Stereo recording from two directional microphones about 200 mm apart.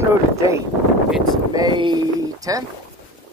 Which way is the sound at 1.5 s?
20° right (ahead or behind).